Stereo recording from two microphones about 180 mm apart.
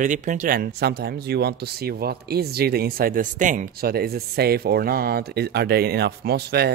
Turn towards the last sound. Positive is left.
turn(degrees=-60)  # may be behind; listen again after turning